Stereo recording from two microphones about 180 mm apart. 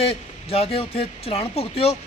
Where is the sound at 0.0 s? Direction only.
35° left (ahead or behind).